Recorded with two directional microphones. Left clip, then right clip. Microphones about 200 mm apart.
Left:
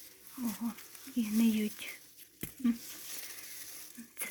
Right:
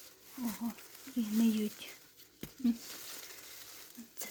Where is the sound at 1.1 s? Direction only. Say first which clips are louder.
Left 1 dB; 15° right (ahead or behind).